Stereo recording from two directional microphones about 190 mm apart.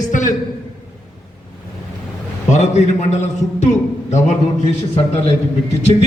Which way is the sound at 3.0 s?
35° left (ahead or behind).